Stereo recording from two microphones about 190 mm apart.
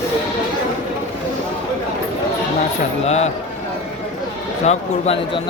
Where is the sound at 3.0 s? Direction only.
35° left (ahead or behind).